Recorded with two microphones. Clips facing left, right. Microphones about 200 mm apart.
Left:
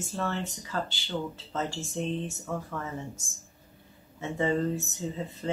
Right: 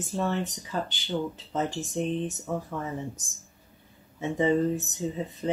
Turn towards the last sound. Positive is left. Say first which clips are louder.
# right 3 dB
turn(degrees=-15)  # may be behind; listen again after turning